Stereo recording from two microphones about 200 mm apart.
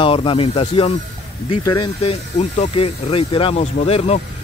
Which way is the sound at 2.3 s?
35° left (ahead or behind).